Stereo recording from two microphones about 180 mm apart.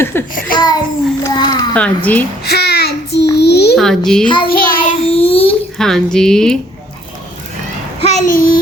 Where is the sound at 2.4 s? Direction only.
60° left (ahead or behind).